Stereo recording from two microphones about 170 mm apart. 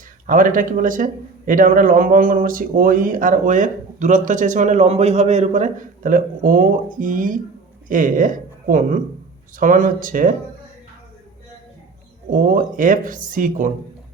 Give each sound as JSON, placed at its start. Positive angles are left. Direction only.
{"t": 0.3, "sound": "speech", "side_deg": -55}
{"t": 12.3, "sound": "speech", "side_deg": -55}